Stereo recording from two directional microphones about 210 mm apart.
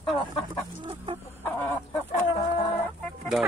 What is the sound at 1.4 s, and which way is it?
Chicken, 10° left (ahead or behind).